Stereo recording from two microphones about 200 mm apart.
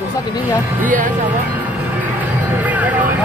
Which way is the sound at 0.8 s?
40° right (ahead or behind).